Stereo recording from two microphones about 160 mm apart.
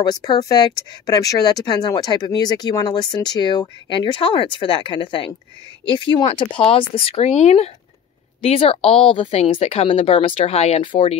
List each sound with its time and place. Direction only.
0.0 s speech: 25° left (ahead or behind)